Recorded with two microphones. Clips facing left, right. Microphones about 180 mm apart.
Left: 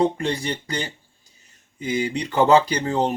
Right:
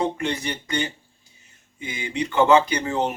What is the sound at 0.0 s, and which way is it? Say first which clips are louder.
Speech: left 3 dB; 35° left (ahead or behind).